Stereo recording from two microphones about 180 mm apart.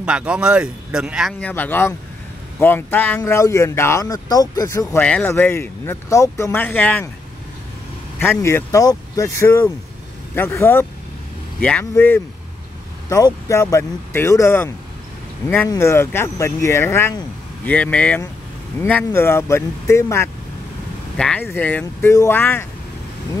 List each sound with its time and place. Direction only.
0.0 s speech: 5° right (ahead or behind)
1.4 s speech: 10° left (ahead or behind)
8.2 s speech: 15° left (ahead or behind)